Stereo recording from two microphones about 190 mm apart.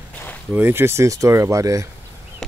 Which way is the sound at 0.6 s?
10° right (ahead or behind).